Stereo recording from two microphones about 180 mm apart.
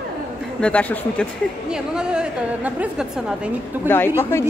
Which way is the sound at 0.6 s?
5° left (ahead or behind).